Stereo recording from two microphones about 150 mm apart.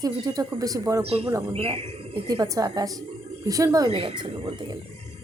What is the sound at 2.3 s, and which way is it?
Speech, 25° right (ahead or behind).